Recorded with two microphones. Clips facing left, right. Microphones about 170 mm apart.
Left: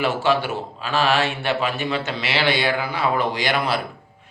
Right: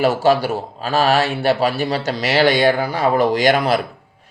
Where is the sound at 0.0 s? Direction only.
40° right (ahead or behind).